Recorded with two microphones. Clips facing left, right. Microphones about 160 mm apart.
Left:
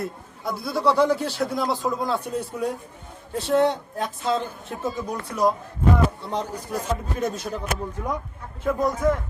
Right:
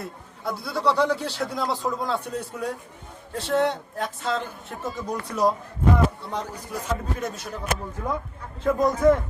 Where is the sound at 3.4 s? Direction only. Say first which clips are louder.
Left 3 dB; 10° left (ahead or behind).